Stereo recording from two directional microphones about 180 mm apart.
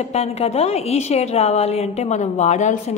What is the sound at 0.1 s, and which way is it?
A woman's voice, 35° left (ahead or behind).